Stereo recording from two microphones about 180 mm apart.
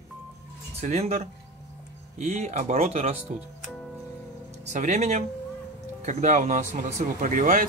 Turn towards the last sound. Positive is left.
turn(degrees=-50)  # may be behind; listen again after turning